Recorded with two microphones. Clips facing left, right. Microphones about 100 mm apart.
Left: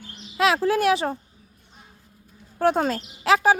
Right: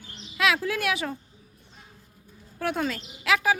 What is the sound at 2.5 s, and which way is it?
Speech, 35° left (ahead or behind).